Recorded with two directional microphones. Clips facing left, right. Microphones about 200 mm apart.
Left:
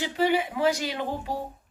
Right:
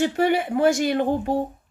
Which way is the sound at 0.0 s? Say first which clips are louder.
Right 4 dB; 55° right (ahead or behind).